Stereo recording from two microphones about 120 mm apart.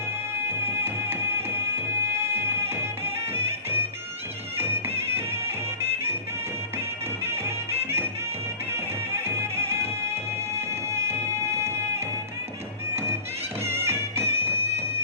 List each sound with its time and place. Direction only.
0.3 s music: 20° right (ahead or behind)
7.4 s music: 20° right (ahead or behind)
13.7 s music: 20° right (ahead or behind)